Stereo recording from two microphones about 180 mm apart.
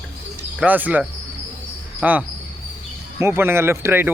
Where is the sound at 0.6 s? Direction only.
10° right (ahead or behind).